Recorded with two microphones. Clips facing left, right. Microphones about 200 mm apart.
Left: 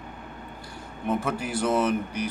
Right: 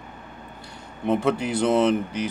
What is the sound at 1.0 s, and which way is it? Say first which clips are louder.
Speech: right 5 dB; 25° right (ahead or behind).